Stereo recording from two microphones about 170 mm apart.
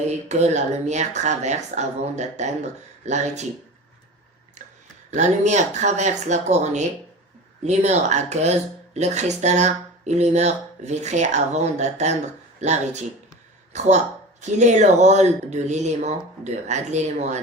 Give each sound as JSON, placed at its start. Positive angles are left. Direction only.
{"t": 0.3, "sound": "speech", "side_deg": -40}
{"t": 5.1, "sound": "speech", "side_deg": -45}